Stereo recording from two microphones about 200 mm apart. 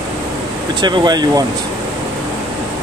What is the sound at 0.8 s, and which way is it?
Speech, 20° right (ahead or behind).